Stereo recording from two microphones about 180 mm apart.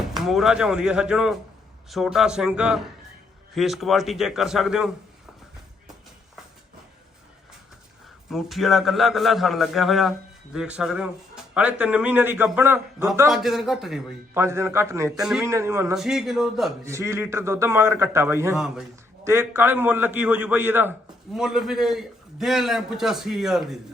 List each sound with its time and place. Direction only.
0.1 s a man's voice: centre (ahead or behind)
8.3 s a man's voice: centre (ahead or behind)
13.3 s a man's voice: centre (ahead or behind)
14.3 s a man's voice: 15° right (ahead or behind)
15.2 s a man's voice: 5° right (ahead or behind)
15.4 s a man's voice: 15° right (ahead or behind)
16.0 s a man's voice: centre (ahead or behind)
16.8 s a man's voice: 15° right (ahead or behind)
18.5 s a man's voice: centre (ahead or behind)
19.2 s a man's voice: 15° right (ahead or behind)